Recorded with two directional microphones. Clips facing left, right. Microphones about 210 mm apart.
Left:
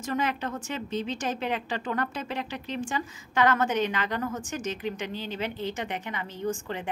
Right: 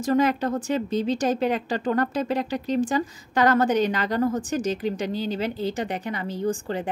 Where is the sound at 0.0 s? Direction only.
35° right (ahead or behind).